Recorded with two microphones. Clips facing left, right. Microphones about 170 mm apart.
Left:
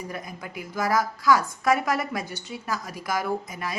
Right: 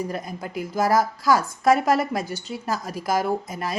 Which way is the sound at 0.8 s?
35° right (ahead or behind).